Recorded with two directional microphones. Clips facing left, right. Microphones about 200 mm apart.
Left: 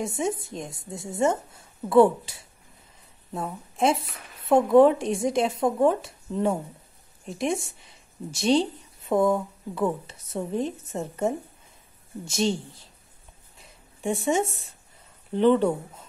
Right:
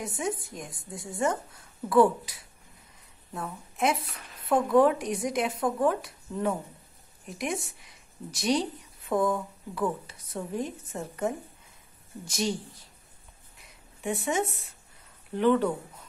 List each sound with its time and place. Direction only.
0.0 s a woman's voice: 25° left (ahead or behind)
3.7 s a woman's voice: 30° left (ahead or behind)
13.6 s a sound: 25° left (ahead or behind)
15.3 s a woman's voice: 25° left (ahead or behind)